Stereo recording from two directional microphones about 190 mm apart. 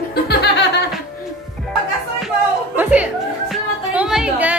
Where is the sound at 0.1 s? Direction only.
55° left (ahead or behind).